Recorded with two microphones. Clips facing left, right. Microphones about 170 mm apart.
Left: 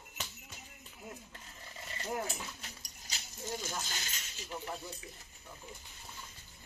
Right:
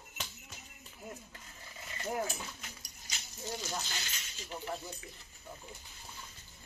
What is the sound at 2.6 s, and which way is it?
Dog, 35° left (ahead or behind).